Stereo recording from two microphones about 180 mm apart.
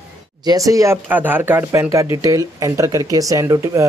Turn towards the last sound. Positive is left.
turn(degrees=-15)  # may be behind; listen again after turning